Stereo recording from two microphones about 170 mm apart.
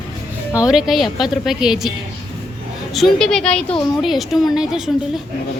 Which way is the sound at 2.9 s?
Centre (ahead or behind).